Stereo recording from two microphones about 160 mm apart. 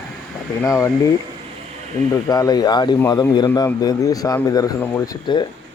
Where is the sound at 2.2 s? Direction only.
20° left (ahead or behind).